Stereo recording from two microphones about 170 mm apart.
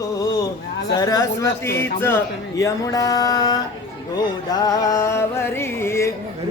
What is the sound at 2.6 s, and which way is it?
Mantra, 20° left (ahead or behind).